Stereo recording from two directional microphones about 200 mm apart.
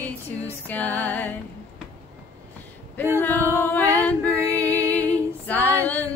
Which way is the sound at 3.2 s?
10° left (ahead or behind).